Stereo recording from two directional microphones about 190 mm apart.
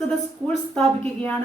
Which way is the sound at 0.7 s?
5° left (ahead or behind).